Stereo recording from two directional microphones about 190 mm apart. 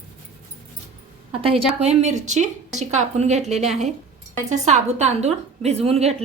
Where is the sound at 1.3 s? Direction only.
30° right (ahead or behind).